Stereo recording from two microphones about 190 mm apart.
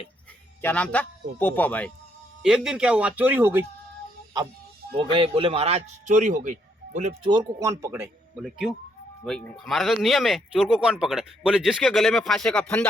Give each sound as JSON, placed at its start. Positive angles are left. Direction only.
{"t": 0.6, "sound": "a man's voice", "side_deg": 5}
{"t": 2.4, "sound": "speech", "side_deg": -5}
{"t": 5.1, "sound": "speech", "side_deg": -30}
{"t": 7.3, "sound": "speech", "side_deg": -20}
{"t": 8.4, "sound": "speech", "side_deg": -5}